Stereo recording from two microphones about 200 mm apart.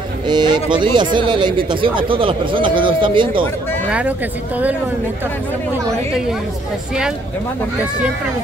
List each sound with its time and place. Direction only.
0.3 s speech: 20° right (ahead or behind)